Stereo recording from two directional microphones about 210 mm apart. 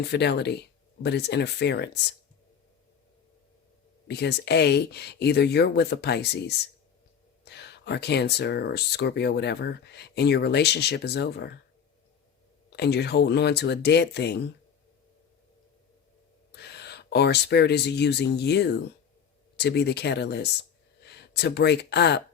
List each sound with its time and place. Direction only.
0.0 s speech: 50° left (ahead or behind)
4.1 s speech: 55° left (ahead or behind)
12.7 s speech: 50° left (ahead or behind)
16.5 s speech: 50° left (ahead or behind)